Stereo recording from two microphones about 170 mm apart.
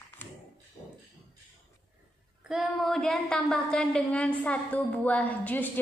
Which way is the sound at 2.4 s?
5° right (ahead or behind).